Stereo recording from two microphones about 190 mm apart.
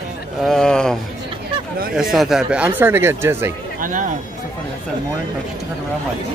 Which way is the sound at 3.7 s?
45° right (ahead or behind).